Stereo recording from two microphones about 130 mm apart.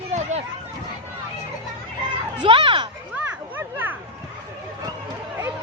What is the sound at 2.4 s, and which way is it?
Children playing, 40° right (ahead or behind).